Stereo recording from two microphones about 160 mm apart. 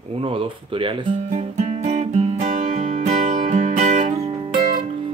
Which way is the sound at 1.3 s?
45° right (ahead or behind).